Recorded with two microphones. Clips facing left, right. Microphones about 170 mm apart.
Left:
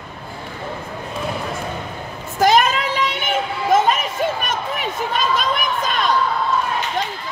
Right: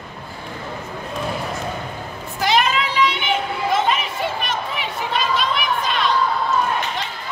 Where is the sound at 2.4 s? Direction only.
45° left (ahead or behind).